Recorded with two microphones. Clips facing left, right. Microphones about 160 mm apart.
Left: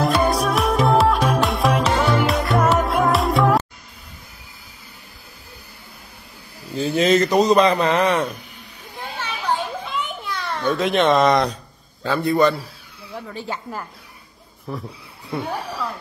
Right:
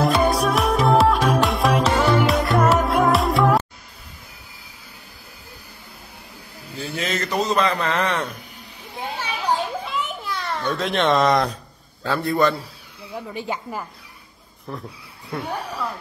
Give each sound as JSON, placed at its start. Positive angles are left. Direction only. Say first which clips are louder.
{"t": 0.0, "sound": "music", "louder": "even", "side_deg": 0}
{"t": 6.8, "sound": "a man's voice", "louder": "left 10 dB", "side_deg": 20}
{"t": 9.2, "sound": "children playing", "louder": "even", "side_deg": -10}
{"t": 9.8, "sound": "a sound", "louder": "even", "side_deg": 0}
{"t": 12.0, "sound": "a man's voice", "louder": "left 2 dB", "side_deg": 0}
{"t": 13.1, "sound": "speech", "louder": "right 1 dB", "side_deg": -15}
{"t": 14.7, "sound": "a man's voice", "louder": "left 3 dB", "side_deg": 5}